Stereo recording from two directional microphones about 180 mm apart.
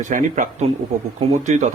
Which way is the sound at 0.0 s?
45° right (ahead or behind).